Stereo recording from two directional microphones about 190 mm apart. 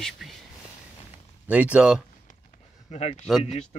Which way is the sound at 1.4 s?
5° right (ahead or behind).